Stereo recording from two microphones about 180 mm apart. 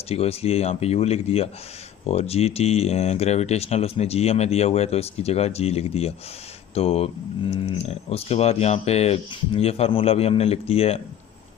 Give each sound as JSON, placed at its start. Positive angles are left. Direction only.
{"t": 0.1, "sound": "speech", "side_deg": 35}